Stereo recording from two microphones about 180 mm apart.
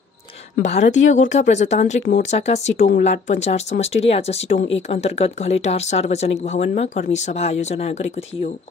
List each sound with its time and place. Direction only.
0.7 s speech: 40° left (ahead or behind)